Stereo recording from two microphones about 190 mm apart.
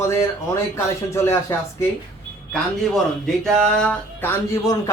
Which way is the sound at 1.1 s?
15° left (ahead or behind).